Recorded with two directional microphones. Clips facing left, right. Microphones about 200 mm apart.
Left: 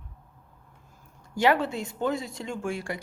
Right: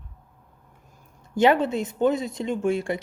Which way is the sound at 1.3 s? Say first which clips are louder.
Right 4 dB; 20° right (ahead or behind).